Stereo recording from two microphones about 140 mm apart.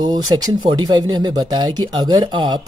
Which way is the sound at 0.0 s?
30° right (ahead or behind).